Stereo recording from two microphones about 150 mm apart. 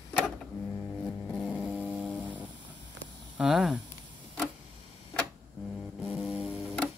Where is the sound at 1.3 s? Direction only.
5° left (ahead or behind).